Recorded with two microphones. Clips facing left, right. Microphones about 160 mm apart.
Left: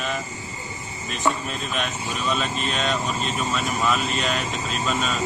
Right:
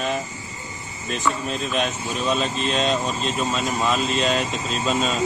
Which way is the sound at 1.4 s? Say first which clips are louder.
Right 4 dB; 35° right (ahead or behind).